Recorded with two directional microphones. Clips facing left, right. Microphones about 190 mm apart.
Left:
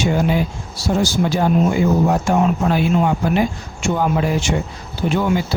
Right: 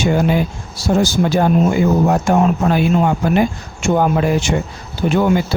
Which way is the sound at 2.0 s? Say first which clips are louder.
Right 2 dB; 55° right (ahead or behind).